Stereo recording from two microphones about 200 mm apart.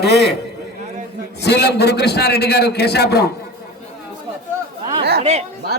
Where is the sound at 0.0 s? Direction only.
55° left (ahead or behind).